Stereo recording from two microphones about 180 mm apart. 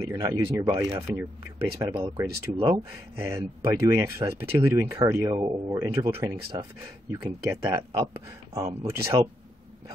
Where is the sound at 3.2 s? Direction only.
15° right (ahead or behind).